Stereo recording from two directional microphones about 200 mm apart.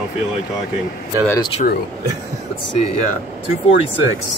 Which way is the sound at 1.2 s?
15° left (ahead or behind).